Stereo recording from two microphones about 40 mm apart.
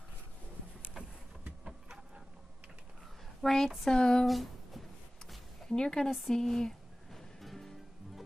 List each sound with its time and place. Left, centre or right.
1.0 s a sound: centre
3.4 s speech: centre
3.8 s speech: centre
4.3 s a sound: centre
5.7 s speech: centre
6.0 s a woman's voice: centre
6.3 s music: centre